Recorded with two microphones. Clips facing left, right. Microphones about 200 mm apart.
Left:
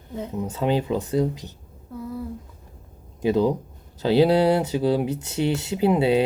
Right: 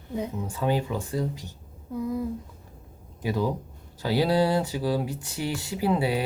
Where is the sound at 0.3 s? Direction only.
20° left (ahead or behind).